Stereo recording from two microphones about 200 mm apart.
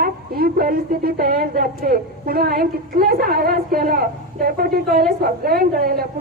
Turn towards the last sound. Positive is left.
turn(degrees=-50)  # may be behind; listen again after turning